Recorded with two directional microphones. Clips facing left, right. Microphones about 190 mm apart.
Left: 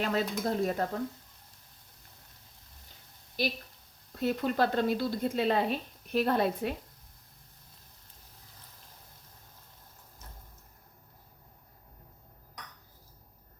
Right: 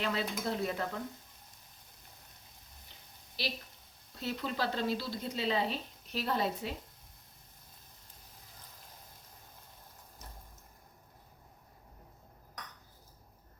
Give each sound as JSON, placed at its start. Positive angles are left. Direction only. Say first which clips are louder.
{"t": 0.0, "sound": "speech", "louder": "left 4 dB", "side_deg": 45}
{"t": 3.4, "sound": "speech", "louder": "left 7 dB", "side_deg": 50}